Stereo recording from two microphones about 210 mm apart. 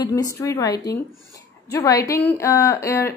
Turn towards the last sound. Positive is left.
turn(degrees=15)  # may be behind; listen again after turning